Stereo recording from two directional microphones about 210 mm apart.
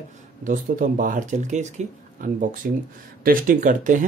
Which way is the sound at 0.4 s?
40° right (ahead or behind).